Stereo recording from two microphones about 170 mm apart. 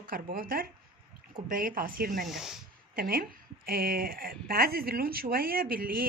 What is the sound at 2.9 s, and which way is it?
Speech, 60° right (ahead or behind).